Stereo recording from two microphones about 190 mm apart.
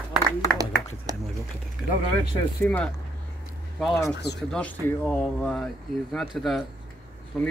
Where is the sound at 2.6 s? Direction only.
10° left (ahead or behind).